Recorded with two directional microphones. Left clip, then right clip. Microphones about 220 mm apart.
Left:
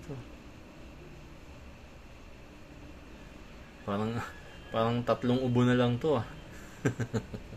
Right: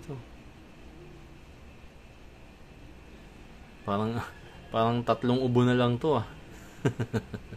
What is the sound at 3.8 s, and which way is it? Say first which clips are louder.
Speech: right 3 dB; 20° right (ahead or behind).